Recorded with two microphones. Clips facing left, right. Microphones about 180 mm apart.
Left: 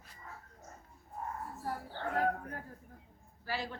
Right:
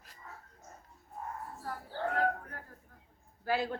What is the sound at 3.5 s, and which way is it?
Speech, 55° right (ahead or behind).